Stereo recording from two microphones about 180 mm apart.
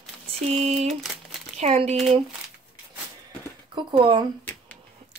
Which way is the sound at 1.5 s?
35° right (ahead or behind).